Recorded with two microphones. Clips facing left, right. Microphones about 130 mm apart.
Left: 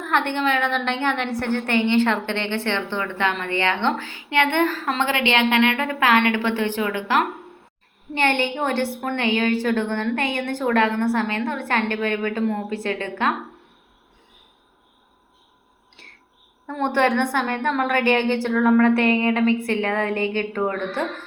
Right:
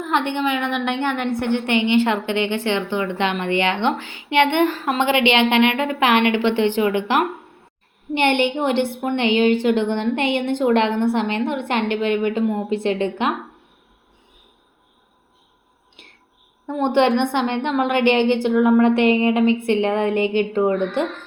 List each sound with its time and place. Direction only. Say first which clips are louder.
0.0 s a woman's voice: right 1 dB; 15° right (ahead or behind)
16.0 s a sound: right 1 dB; 20° right (ahead or behind)
16.6 s a woman's voice: right 3 dB; 20° right (ahead or behind)